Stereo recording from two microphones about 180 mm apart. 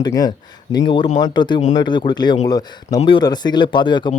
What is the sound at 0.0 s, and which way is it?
A man's voice, 20° left (ahead or behind).